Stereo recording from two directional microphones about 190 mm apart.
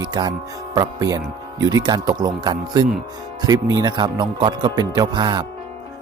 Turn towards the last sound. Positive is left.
turn(degrees=-25)  # may be behind; listen again after turning